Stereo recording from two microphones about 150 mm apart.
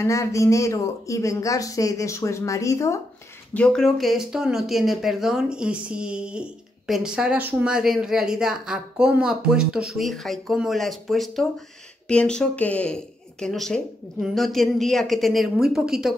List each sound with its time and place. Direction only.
0.0 s speech: 20° left (ahead or behind)
3.5 s speech: 5° left (ahead or behind)